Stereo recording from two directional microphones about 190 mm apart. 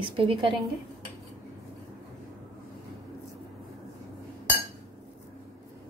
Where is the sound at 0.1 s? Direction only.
30° right (ahead or behind).